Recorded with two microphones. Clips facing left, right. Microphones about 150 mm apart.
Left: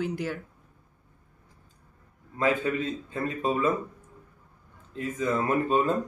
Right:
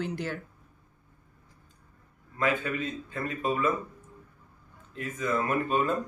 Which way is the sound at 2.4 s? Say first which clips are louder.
Left 3 dB; 30° left (ahead or behind).